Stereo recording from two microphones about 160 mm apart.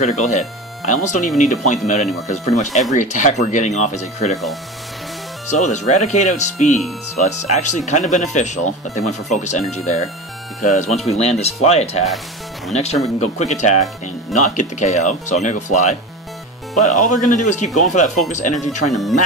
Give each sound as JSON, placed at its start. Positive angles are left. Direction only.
{"t": 0.0, "sound": "speech", "side_deg": 45}
{"t": 5.5, "sound": "speech", "side_deg": 45}